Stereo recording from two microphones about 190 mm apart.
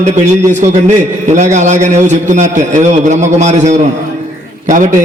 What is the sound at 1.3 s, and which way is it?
A man's voice, 40° right (ahead or behind).